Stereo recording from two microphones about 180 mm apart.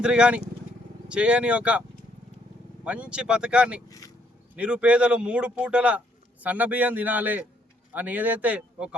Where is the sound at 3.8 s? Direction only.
20° left (ahead or behind).